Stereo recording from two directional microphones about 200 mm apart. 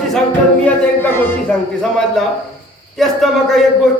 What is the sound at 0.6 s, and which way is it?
Speech, 10° left (ahead or behind).